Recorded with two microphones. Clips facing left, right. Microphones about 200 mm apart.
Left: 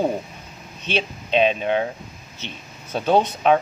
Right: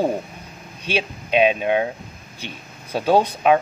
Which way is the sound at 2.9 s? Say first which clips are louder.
Right 1 dB; 10° right (ahead or behind).